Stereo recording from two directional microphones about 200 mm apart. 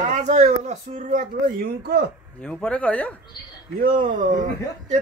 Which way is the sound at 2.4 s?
10° left (ahead or behind).